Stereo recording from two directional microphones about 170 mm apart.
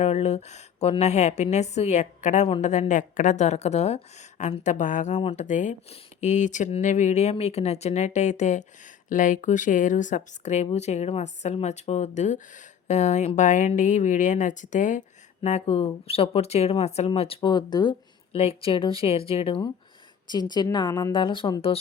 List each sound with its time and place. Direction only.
0.0 s a woman's voice: 40° left (ahead or behind)